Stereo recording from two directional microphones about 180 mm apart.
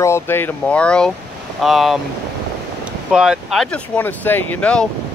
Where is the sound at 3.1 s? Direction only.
5° right (ahead or behind).